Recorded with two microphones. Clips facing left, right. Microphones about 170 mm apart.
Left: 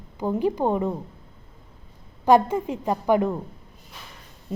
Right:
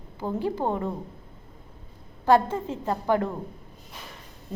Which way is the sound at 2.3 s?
15° left (ahead or behind).